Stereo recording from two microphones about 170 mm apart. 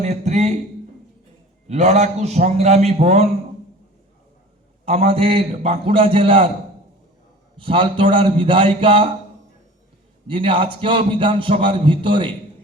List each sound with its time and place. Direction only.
0.0 s a man's voice: 40° right (ahead or behind)
1.6 s a man's voice: 40° right (ahead or behind)
4.9 s a man's voice: 35° right (ahead or behind)
7.5 s a man's voice: 30° right (ahead or behind)
10.2 s a man's voice: 30° right (ahead or behind)